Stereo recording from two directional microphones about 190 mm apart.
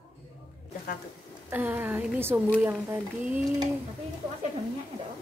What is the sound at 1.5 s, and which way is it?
Speech, 10° right (ahead or behind).